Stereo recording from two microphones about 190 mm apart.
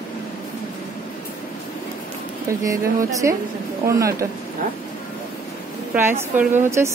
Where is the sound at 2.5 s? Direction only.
15° right (ahead or behind).